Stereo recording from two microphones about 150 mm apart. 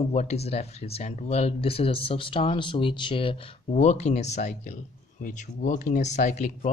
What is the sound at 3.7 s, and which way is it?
Speech, 50° left (ahead or behind).